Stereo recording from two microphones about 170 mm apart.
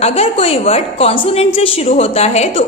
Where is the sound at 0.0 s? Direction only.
40° left (ahead or behind).